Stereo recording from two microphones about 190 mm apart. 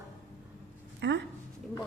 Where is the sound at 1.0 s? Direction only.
65° right (ahead or behind).